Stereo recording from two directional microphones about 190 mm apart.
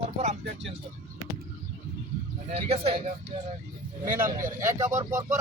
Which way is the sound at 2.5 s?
35° right (ahead or behind).